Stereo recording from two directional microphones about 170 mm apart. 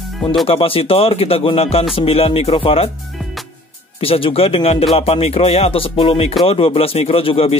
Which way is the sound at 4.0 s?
35° left (ahead or behind).